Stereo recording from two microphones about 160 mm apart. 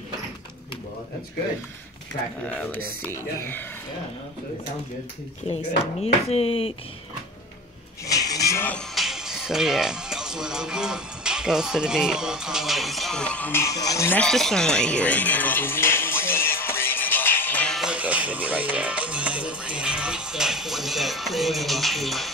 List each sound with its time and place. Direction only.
2.4 s speech: 10° left (ahead or behind)
6.2 s speech: 40° left (ahead or behind)
8.1 s a sound: 20° left (ahead or behind)
8.7 s speech: centre (ahead or behind); by 14.2 s 15° left (ahead or behind)
14.2 s music: 5° left (ahead or behind)